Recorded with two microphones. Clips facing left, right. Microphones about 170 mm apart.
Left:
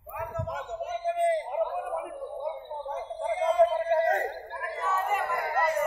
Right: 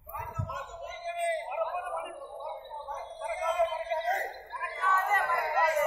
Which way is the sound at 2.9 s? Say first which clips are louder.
Left 6 dB; 25° left (ahead or behind).